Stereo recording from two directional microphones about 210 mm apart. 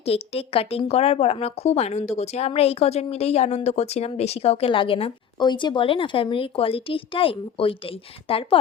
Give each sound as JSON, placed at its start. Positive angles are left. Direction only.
{"t": 0.0, "sound": "a woman's voice", "side_deg": 30}